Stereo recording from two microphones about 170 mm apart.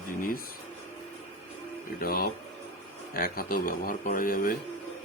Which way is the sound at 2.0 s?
60° left (ahead or behind).